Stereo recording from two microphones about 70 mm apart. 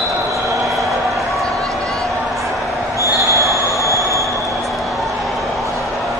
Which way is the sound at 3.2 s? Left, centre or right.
Right.